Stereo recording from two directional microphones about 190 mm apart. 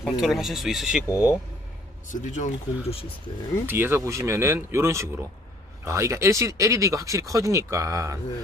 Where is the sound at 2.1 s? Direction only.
40° left (ahead or behind).